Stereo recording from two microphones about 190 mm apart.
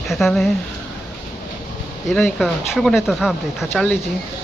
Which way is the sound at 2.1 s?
5° left (ahead or behind).